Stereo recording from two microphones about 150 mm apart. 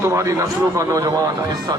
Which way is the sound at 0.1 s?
20° right (ahead or behind).